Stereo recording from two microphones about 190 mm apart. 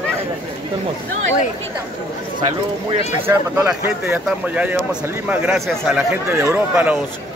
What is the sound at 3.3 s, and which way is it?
A man's voice, 10° right (ahead or behind).